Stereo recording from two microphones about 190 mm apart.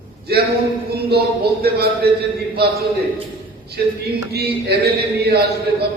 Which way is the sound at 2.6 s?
60° right (ahead or behind).